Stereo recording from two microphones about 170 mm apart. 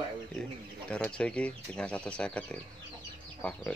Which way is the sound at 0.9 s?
5° left (ahead or behind).